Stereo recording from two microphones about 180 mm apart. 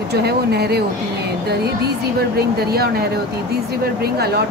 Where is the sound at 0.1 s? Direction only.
65° right (ahead or behind).